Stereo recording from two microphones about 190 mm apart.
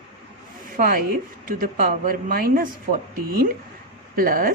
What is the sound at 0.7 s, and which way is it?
Speech, 50° right (ahead or behind).